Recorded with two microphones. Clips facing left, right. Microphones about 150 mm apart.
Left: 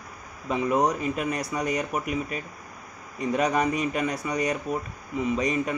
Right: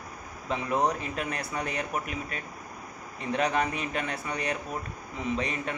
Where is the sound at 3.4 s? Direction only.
10° left (ahead or behind).